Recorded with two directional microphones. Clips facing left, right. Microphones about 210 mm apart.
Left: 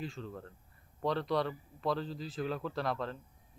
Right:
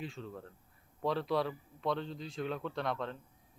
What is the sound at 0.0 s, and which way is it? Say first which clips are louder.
Speech: left 1 dB; centre (ahead or behind).